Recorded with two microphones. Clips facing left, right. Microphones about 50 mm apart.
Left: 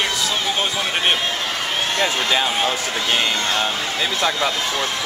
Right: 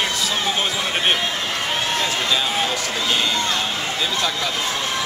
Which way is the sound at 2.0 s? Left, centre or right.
Left.